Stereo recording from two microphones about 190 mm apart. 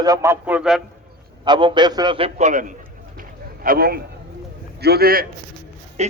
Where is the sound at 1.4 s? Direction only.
25° right (ahead or behind); by 5.3 s 50° right (ahead or behind).